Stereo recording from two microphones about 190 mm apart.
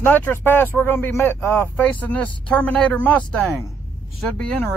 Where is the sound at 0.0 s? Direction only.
10° left (ahead or behind).